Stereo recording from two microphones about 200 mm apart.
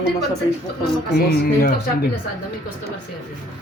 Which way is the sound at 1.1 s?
50° left (ahead or behind).